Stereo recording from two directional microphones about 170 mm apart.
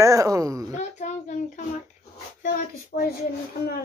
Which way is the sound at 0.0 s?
20° right (ahead or behind).